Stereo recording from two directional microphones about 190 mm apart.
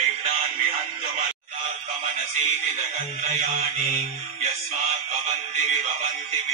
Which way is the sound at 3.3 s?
35° right (ahead or behind).